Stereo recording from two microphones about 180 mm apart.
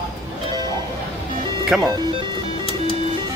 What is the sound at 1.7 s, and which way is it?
Speech, 5° right (ahead or behind).